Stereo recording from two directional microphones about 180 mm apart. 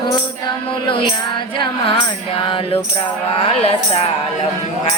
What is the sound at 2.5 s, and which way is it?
Speech, 30° left (ahead or behind).